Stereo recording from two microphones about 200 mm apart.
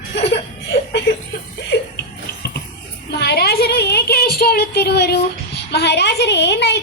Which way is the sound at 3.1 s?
55° left (ahead or behind).